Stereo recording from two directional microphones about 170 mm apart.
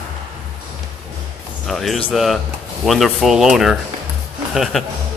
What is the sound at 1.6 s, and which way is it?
Speech, centre (ahead or behind).